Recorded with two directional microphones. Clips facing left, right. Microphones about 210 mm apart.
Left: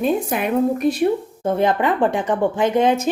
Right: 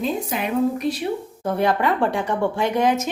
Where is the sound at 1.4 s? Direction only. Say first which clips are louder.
Left 2 dB; 20° left (ahead or behind).